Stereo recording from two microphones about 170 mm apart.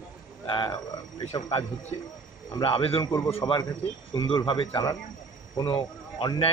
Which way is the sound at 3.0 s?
20° left (ahead or behind).